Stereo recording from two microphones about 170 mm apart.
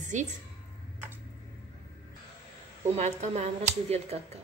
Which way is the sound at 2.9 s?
40° right (ahead or behind).